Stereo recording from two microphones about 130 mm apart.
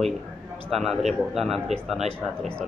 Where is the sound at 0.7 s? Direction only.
Centre (ahead or behind).